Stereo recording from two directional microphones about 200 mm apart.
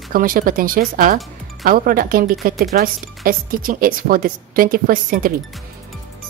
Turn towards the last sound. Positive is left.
turn(degrees=-45)  # may be behind; listen again after turning